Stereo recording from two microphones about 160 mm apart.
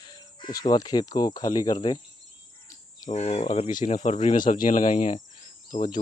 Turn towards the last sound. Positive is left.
turn(degrees=55)  # may be behind; listen again after turning